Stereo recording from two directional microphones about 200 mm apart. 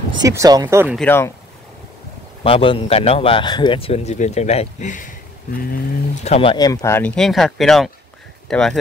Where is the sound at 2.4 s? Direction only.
25° left (ahead or behind).